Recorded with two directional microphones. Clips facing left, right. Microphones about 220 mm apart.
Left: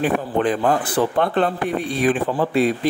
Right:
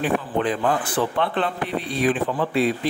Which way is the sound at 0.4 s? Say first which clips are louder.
Left 5 dB; 45° left (ahead or behind).